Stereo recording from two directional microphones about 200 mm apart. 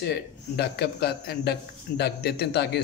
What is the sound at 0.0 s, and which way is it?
Speech, 55° left (ahead or behind).